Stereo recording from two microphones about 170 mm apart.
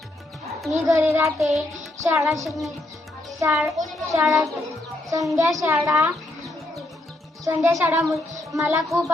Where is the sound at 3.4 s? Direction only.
20° right (ahead or behind).